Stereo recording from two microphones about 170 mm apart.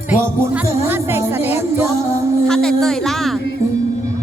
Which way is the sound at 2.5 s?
5° left (ahead or behind).